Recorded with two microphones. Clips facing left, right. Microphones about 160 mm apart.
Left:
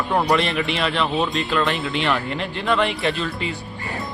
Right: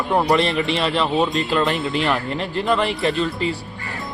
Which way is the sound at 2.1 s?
35° right (ahead or behind).